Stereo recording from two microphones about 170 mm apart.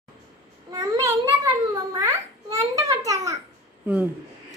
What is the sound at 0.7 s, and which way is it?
Babbling, 20° right (ahead or behind).